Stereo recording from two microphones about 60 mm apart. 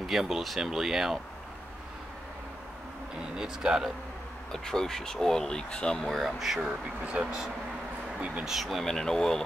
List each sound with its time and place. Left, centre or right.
0.0 s speech: centre
3.3 s speech: centre
4.5 s speech: centre
6.0 s speech: centre
7.1 s speech: centre
8.5 s speech: centre
8.8 s speech: centre